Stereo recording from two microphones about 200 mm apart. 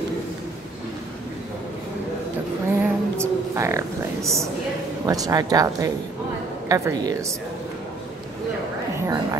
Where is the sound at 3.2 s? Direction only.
15° right (ahead or behind).